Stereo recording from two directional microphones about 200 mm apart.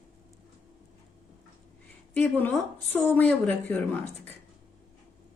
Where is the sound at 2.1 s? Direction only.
10° left (ahead or behind).